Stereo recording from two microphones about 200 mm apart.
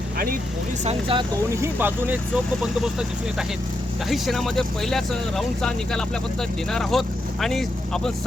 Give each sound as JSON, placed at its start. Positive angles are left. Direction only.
{"t": 0.9, "sound": "speech", "side_deg": -25}
{"t": 1.6, "sound": "speech", "side_deg": -10}
{"t": 4.1, "sound": "speech", "side_deg": 0}